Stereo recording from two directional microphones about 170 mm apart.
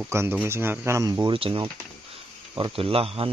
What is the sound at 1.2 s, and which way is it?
Speech, 30° right (ahead or behind).